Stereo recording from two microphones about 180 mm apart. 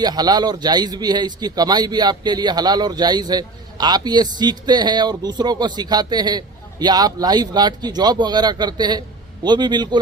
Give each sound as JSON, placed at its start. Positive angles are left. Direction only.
{"t": 0.0, "sound": "a man's voice", "side_deg": -20}